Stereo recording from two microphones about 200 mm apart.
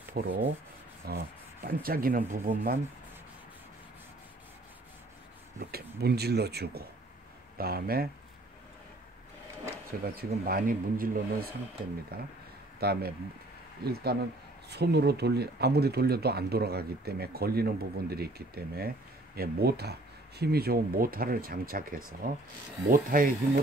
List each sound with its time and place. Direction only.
0.2 s speech: 50° right (ahead or behind)
5.6 s speech: 50° right (ahead or behind)
10.0 s speech: 45° right (ahead or behind)